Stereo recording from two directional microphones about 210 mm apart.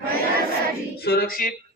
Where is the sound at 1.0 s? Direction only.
45° left (ahead or behind).